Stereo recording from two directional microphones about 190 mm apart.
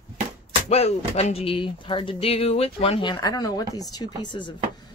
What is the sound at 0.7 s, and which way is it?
Speech, 35° left (ahead or behind).